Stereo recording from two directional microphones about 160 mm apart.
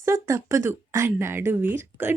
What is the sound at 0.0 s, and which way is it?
Speech, 20° right (ahead or behind).